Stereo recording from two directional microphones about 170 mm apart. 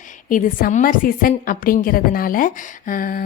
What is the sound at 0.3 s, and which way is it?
A woman's voice, 50° left (ahead or behind).